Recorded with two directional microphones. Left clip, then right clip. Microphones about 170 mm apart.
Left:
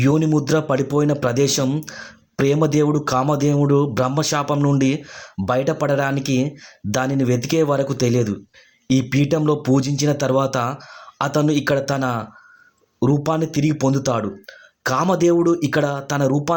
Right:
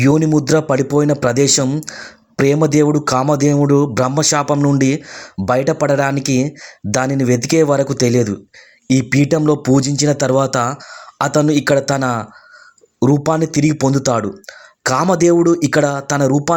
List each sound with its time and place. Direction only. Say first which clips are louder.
0.0 s speech: right 5 dB; 20° right (ahead or behind)